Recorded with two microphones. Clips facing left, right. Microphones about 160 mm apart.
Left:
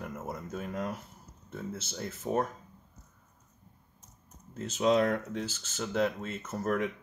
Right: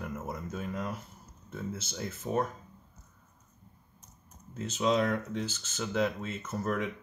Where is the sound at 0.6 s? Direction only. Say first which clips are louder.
Left 1 dB; 50° left (ahead or behind).